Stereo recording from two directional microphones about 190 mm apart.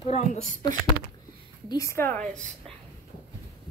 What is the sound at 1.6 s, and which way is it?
Speech, 15° left (ahead or behind).